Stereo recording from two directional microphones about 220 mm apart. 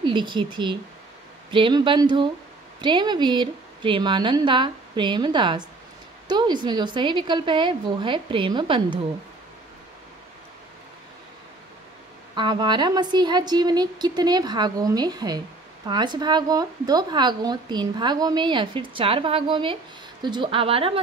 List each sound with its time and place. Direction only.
0.0 s a woman's voice: 20° right (ahead or behind)
12.4 s a woman's voice: 20° right (ahead or behind)